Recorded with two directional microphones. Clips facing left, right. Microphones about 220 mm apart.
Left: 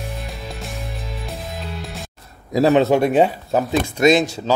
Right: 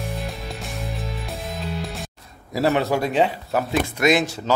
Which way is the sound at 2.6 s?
20° left (ahead or behind).